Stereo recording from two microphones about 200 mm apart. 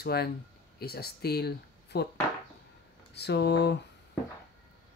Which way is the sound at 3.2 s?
55° left (ahead or behind).